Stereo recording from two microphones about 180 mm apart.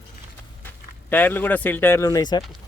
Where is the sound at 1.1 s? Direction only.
10° left (ahead or behind).